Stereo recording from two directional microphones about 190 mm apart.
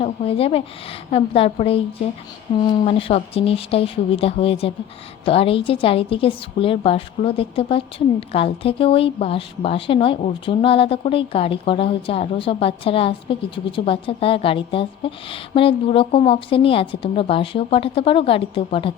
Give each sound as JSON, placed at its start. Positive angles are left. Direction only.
{"t": 0.0, "sound": "a woman's voice", "side_deg": 30}